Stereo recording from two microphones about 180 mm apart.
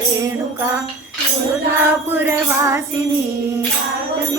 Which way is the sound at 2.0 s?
10° right (ahead or behind).